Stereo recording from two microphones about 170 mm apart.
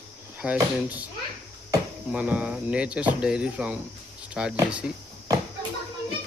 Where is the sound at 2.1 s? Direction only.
10° right (ahead or behind).